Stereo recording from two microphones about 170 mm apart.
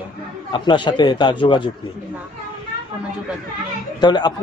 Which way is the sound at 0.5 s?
30° left (ahead or behind).